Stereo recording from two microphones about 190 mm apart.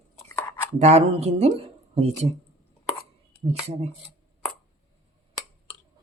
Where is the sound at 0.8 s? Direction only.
35° right (ahead or behind).